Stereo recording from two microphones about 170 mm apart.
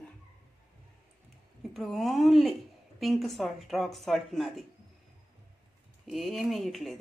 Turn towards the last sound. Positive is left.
turn(degrees=0)  # may be behind; listen again after turning